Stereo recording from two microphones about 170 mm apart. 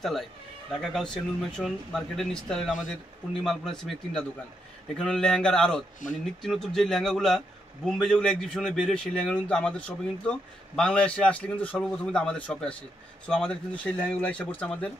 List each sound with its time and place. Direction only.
0.0 s a man's voice: centre (ahead or behind)